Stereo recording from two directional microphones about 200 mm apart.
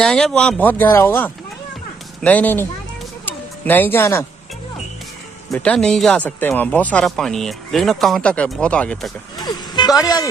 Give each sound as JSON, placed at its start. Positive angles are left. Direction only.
{"t": 0.0, "sound": "speech", "side_deg": 5}
{"t": 5.5, "sound": "speech", "side_deg": 5}
{"t": 9.4, "sound": "vehicle", "side_deg": 20}